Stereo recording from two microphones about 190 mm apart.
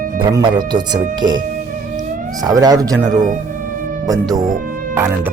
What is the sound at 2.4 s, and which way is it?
Speech, 20° right (ahead or behind).